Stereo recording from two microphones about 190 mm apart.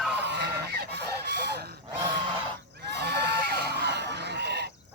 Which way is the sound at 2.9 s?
60° right (ahead or behind).